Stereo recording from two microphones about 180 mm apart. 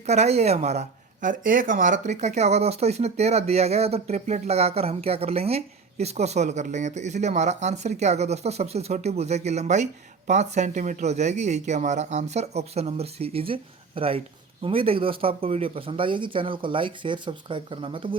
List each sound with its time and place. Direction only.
0.0 s speech: 40° right (ahead or behind)